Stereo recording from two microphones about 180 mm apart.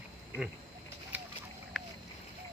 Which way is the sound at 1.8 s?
Centre (ahead or behind).